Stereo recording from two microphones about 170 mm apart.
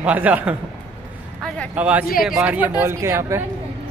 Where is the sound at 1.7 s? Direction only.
10° right (ahead or behind).